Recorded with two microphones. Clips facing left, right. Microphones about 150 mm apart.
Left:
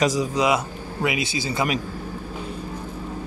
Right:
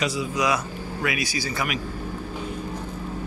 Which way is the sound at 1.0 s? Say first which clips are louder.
Left 3 dB; 25° left (ahead or behind).